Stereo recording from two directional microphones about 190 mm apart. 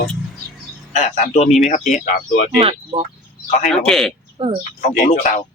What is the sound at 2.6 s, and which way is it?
Speech, 30° right (ahead or behind).